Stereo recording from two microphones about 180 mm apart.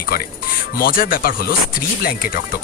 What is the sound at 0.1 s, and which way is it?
Speech, 55° left (ahead or behind).